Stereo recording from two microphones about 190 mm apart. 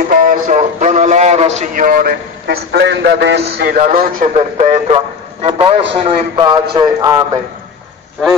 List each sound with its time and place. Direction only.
0.1 s a man's voice: 45° right (ahead or behind)
2.4 s a man's voice: 65° right (ahead or behind)
4.2 s a man's voice: 35° right (ahead or behind); by 7.2 s 20° right (ahead or behind)